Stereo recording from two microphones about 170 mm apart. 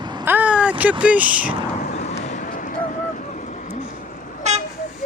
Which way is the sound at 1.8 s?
45° left (ahead or behind).